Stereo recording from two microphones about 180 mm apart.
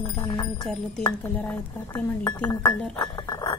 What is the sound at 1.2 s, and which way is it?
Speech, 10° left (ahead or behind).